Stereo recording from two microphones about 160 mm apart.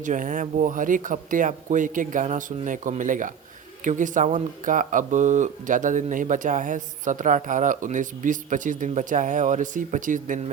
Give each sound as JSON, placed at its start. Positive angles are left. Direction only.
{"t": 0.0, "sound": "speech", "side_deg": -55}